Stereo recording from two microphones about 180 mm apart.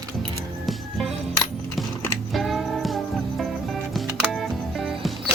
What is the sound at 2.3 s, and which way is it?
Music, centre (ahead or behind).